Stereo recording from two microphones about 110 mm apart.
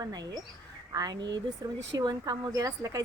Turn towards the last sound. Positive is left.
turn(degrees=-30)  # may be behind; listen again after turning